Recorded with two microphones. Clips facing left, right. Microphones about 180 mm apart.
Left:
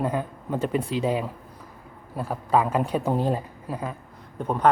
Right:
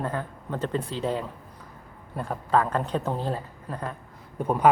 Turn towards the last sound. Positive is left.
turn(degrees=-10)  # may be behind; listen again after turning